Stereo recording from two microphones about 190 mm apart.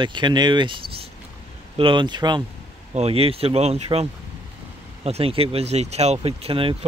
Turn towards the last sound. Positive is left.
turn(degrees=-30)  # may be behind; listen again after turning